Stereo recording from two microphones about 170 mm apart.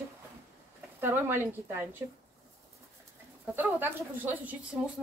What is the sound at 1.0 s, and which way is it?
Speech, 15° right (ahead or behind).